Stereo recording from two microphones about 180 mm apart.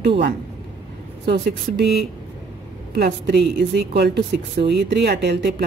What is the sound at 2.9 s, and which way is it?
A woman's voice, 65° right (ahead or behind).